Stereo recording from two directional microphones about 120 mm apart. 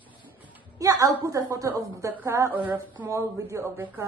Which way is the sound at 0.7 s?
30° right (ahead or behind).